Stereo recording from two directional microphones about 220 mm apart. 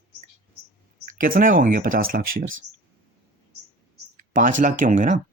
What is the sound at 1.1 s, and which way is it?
Speech, 40° right (ahead or behind).